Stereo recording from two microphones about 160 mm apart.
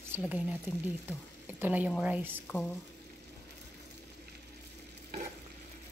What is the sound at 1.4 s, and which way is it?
Speech, 10° right (ahead or behind).